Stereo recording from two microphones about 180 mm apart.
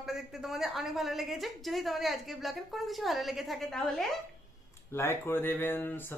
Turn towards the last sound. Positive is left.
turn(degrees=10)  # may be behind; listen again after turning